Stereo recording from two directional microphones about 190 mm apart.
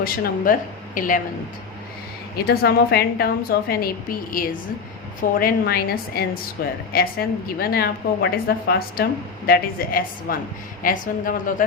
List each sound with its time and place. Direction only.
0.0 s a woman's voice: 50° left (ahead or behind)
2.5 s a woman's voice: 55° left (ahead or behind)